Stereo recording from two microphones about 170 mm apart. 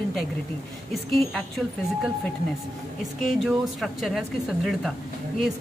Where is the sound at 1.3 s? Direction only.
Centre (ahead or behind).